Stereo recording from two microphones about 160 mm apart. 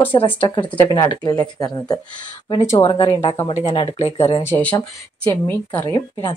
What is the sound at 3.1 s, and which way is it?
A woman's voice, 40° left (ahead or behind).